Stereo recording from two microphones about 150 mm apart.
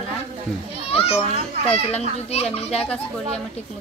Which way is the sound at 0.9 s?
40° left (ahead or behind).